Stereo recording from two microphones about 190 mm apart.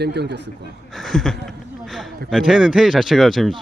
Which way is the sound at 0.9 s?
Centre (ahead or behind).